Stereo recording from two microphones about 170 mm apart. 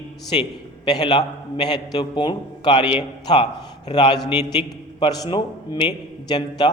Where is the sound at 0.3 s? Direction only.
30° left (ahead or behind).